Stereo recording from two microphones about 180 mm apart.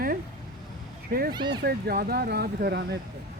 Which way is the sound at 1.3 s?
25° right (ahead or behind).